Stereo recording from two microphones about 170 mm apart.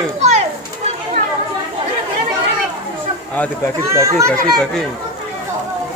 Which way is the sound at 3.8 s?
15° right (ahead or behind).